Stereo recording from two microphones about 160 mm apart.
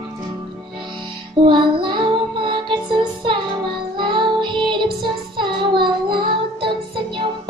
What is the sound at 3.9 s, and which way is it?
Music, 30° right (ahead or behind).